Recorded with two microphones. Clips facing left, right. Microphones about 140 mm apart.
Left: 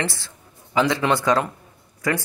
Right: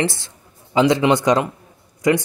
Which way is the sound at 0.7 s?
20° right (ahead or behind).